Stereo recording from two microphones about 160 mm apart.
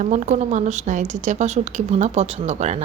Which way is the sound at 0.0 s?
50° right (ahead or behind).